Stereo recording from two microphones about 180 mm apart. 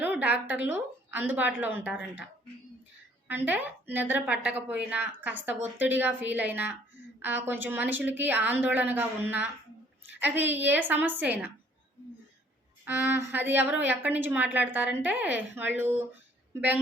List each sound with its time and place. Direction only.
0.2 s a woman's voice: 10° right (ahead or behind)
3.2 s a woman's voice: 10° right (ahead or behind)
12.8 s a woman's voice: 10° right (ahead or behind)